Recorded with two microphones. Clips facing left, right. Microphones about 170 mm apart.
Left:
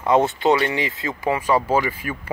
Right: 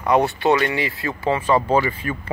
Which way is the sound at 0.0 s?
20° left (ahead or behind).